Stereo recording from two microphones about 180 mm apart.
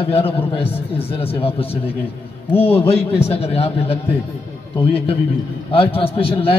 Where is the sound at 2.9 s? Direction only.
35° left (ahead or behind).